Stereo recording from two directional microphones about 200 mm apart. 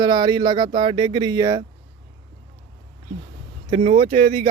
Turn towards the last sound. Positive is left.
turn(degrees=-35)  # may be behind; listen again after turning